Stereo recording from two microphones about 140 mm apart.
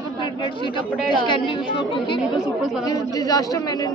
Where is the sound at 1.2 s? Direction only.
35° left (ahead or behind).